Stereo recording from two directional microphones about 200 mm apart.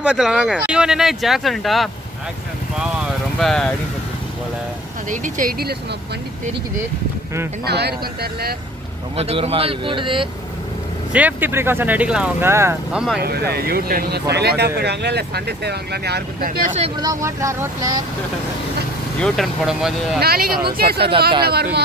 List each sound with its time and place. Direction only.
0.0 s speech: 5° right (ahead or behind)
2.8 s vehicle: centre (ahead or behind)
5.1 s speech: 40° right (ahead or behind)
7.6 s speech: 55° right (ahead or behind)
9.1 s speech: 30° right (ahead or behind)
11.1 s speech: 10° right (ahead or behind)
13.2 s speech: 50° right (ahead or behind)
16.9 s speech: 20° right (ahead or behind)
19.1 s speech: centre (ahead or behind)
20.2 s speech: 50° right (ahead or behind)